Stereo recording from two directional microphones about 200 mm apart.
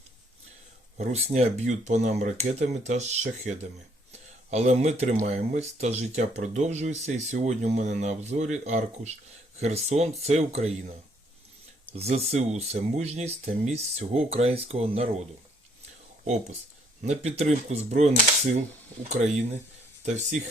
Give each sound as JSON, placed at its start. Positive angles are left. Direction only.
{"t": 0.9, "sound": "speech", "side_deg": -35}
{"t": 11.9, "sound": "speech", "side_deg": -30}
{"t": 16.2, "sound": "speech", "side_deg": -35}